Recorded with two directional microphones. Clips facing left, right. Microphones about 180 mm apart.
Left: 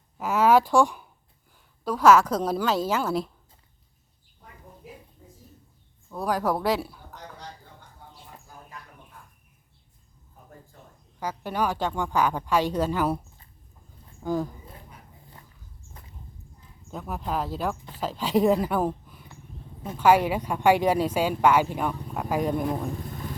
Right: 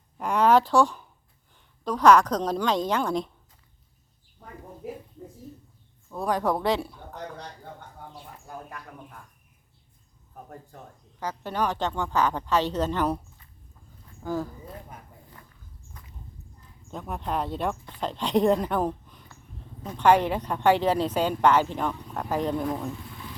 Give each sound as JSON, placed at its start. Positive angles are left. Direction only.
{"t": 0.2, "sound": "a sound", "side_deg": 5}
{"t": 1.8, "sound": "speech", "side_deg": 5}
{"t": 6.1, "sound": "speech", "side_deg": 0}
{"t": 7.3, "sound": "a sound", "side_deg": -65}
{"t": 11.2, "sound": "speech", "side_deg": 10}
{"t": 14.3, "sound": "speech", "side_deg": 15}
{"t": 14.9, "sound": "dog", "side_deg": -50}
{"t": 16.0, "sound": "dog", "side_deg": 30}
{"t": 16.9, "sound": "speech", "side_deg": 5}
{"t": 23.0, "sound": "vehicle", "side_deg": 40}